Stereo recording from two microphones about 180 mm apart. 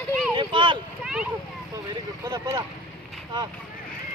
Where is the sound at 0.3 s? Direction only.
25° right (ahead or behind).